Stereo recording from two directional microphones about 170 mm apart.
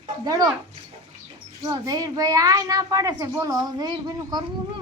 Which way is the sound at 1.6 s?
20° right (ahead or behind).